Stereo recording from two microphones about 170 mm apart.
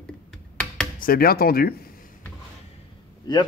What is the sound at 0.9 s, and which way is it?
Speech, 60° left (ahead or behind).